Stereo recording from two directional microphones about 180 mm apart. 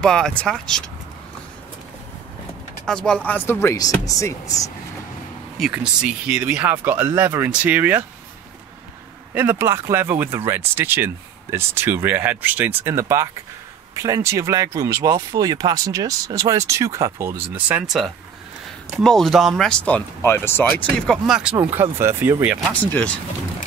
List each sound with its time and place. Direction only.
0.0 s speech: 5° left (ahead or behind)
2.8 s speech: 5° left (ahead or behind)
5.6 s speech: 5° right (ahead or behind)
9.3 s speech: 10° right (ahead or behind); by 20.6 s 10° left (ahead or behind)
20.7 s speech: centre (ahead or behind)
22.7 s speech: 10° left (ahead or behind)